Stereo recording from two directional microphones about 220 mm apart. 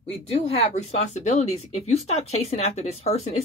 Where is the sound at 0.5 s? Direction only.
30° left (ahead or behind).